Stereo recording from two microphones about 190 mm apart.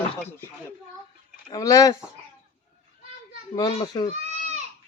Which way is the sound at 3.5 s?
20° left (ahead or behind).